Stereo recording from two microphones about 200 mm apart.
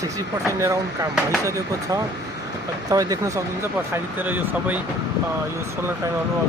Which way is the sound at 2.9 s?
15° right (ahead or behind).